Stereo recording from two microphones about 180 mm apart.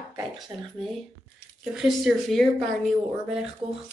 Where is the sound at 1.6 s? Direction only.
Centre (ahead or behind).